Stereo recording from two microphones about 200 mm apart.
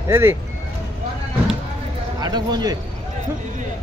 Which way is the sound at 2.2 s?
20° right (ahead or behind).